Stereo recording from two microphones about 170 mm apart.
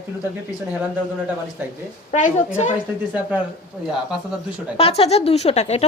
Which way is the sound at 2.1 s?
50° left (ahead or behind).